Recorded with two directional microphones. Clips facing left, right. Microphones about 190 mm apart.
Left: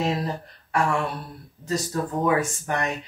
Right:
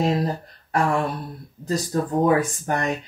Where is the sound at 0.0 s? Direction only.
35° right (ahead or behind).